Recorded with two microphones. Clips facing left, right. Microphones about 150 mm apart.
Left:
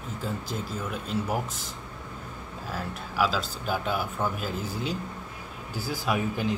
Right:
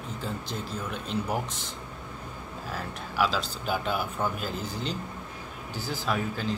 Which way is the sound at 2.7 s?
Centre (ahead or behind).